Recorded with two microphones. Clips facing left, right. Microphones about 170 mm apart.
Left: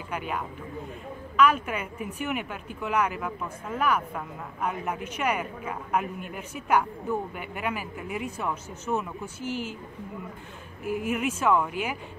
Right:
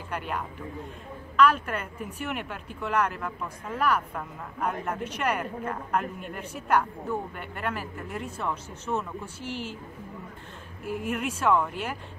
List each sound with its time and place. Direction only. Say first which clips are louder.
0.1 s a woman's voice: left 1 dB; 5° left (ahead or behind)
10.8 s speech: left 2 dB; 5° left (ahead or behind)